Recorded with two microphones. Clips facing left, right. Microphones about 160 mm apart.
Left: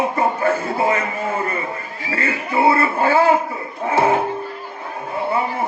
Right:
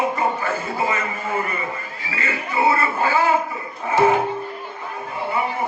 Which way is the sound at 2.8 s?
55° left (ahead or behind).